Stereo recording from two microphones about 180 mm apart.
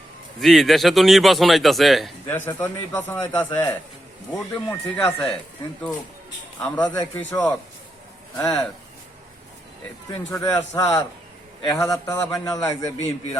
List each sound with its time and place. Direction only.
0.3 s speech: centre (ahead or behind)
2.2 s a man's voice: 10° left (ahead or behind)
6.6 s a man's voice: 5° left (ahead or behind)
10.3 s a man's voice: 15° left (ahead or behind)